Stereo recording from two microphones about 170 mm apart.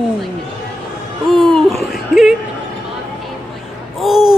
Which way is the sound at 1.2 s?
Centre (ahead or behind).